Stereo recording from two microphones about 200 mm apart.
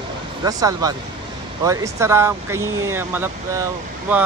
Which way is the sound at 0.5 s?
20° right (ahead or behind).